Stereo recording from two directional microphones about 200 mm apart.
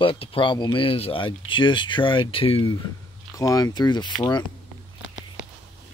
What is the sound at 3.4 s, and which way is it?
Speech, 15° left (ahead or behind).